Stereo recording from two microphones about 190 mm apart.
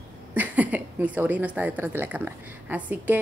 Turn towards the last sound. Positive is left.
turn(degrees=-10)  # may be behind; listen again after turning